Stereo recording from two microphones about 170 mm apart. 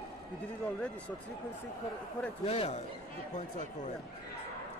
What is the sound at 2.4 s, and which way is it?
Speech, 35° left (ahead or behind).